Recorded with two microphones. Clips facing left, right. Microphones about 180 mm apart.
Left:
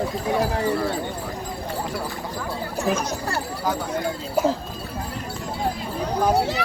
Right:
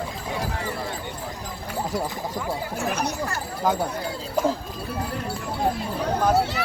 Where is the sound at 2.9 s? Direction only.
65° right (ahead or behind).